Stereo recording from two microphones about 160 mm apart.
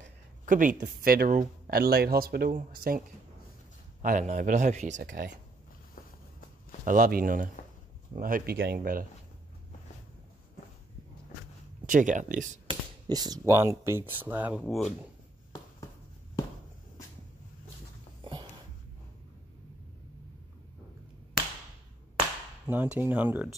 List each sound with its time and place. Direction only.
0.5 s speech: 55° right (ahead or behind)
4.0 s speech: 55° right (ahead or behind)
6.8 s speech: 55° right (ahead or behind)
11.8 s speech: 55° right (ahead or behind)
12.6 s speech: 25° right (ahead or behind)
14.6 s speech: centre (ahead or behind)
18.2 s a sound: 30° right (ahead or behind)
22.9 s speech: 10° right (ahead or behind)